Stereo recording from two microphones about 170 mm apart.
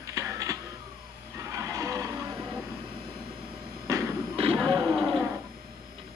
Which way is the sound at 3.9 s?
20° right (ahead or behind).